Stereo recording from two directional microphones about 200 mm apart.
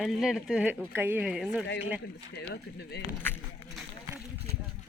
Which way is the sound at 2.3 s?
55° left (ahead or behind).